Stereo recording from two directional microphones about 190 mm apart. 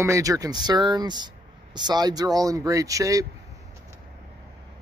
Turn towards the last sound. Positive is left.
turn(degrees=-20)  # may be behind; listen again after turning